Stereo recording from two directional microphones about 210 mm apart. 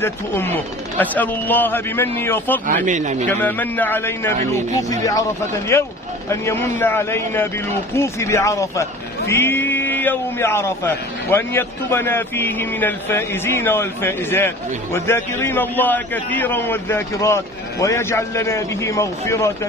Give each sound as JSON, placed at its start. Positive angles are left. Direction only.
{"t": 0.0, "sound": "a man's voice", "side_deg": 10}
{"t": 2.6, "sound": "speech", "side_deg": -40}
{"t": 3.3, "sound": "a man's voice", "side_deg": 10}
{"t": 5.7, "sound": "a man's voice", "side_deg": 10}